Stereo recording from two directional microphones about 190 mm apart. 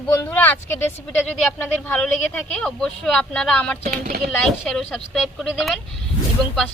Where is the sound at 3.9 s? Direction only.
50° right (ahead or behind).